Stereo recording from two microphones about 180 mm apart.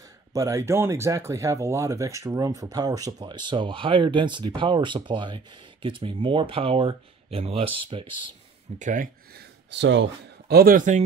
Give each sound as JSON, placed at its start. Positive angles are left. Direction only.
{"t": 0.3, "sound": "speech", "side_deg": -15}
{"t": 8.7, "sound": "speech", "side_deg": -45}
{"t": 10.5, "sound": "speech", "side_deg": -55}